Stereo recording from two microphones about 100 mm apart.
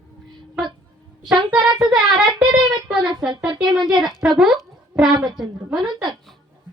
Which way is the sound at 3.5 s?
45° right (ahead or behind).